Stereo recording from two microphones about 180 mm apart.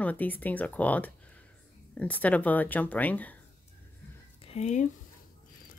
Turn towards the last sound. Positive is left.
turn(degrees=40)  # may be behind; listen again after turning